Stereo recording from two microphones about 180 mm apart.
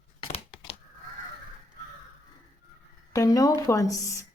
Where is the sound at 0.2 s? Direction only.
30° left (ahead or behind).